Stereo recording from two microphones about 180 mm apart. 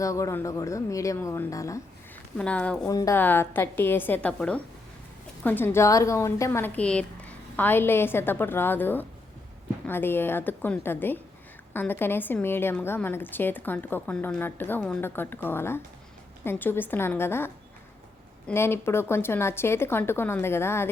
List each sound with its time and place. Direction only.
0.0 s a woman's voice: 15° left (ahead or behind)
2.4 s a woman's voice: 5° left (ahead or behind)
2.9 s a woman's voice: 15° left (ahead or behind)